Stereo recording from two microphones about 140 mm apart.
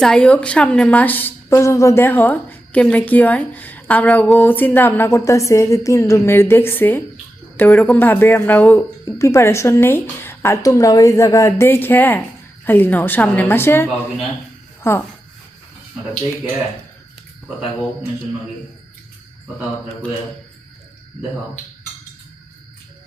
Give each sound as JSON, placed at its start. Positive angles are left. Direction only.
{"t": 0.0, "sound": "a woman's voice", "side_deg": 5}